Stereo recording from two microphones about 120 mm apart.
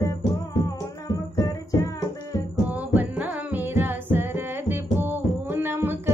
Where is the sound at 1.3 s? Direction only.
30° left (ahead or behind).